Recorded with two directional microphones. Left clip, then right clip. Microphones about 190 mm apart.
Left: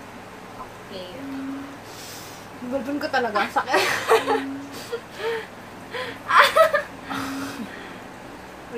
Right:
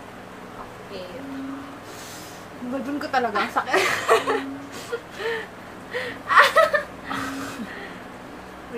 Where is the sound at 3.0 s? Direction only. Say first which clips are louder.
Even; 10° right (ahead or behind).